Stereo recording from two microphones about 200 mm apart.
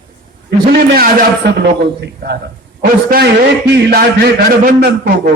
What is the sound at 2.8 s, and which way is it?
A man's voice, 45° right (ahead or behind).